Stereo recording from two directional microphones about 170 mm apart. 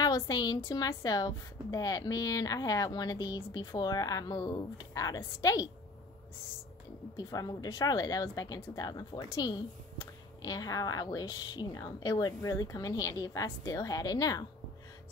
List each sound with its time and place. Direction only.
0.0 s speech: 20° left (ahead or behind)
7.2 s speech: 20° left (ahead or behind)